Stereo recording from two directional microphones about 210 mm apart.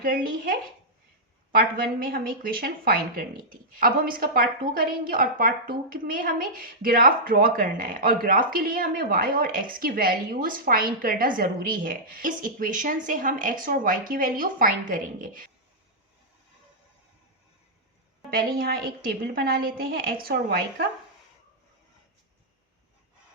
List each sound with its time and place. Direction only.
0.0 s a woman's voice: 45° right (ahead or behind)
1.5 s a woman's voice: 45° right (ahead or behind)
18.3 s a woman's voice: 45° right (ahead or behind)